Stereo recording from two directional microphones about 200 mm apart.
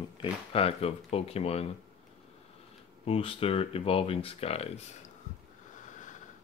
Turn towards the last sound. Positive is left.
turn(degrees=30)  # may be behind; listen again after turning